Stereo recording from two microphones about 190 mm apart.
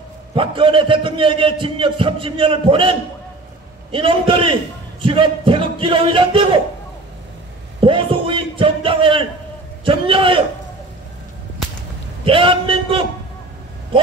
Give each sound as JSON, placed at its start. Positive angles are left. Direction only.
{"t": 0.3, "sound": "a man's voice", "side_deg": -25}
{"t": 7.8, "sound": "a sound", "side_deg": -25}
{"t": 9.8, "sound": "a man's voice", "side_deg": -25}
{"t": 12.3, "sound": "a man's voice", "side_deg": -25}